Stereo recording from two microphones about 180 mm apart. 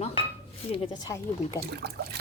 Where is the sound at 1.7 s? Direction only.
60° right (ahead or behind).